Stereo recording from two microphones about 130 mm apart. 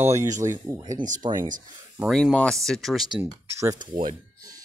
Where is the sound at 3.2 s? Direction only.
25° right (ahead or behind).